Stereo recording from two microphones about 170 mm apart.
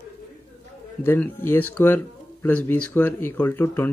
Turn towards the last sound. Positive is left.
turn(degrees=15)  # may be behind; listen again after turning